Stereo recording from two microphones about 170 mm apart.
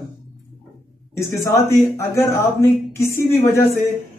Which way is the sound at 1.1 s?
15° left (ahead or behind).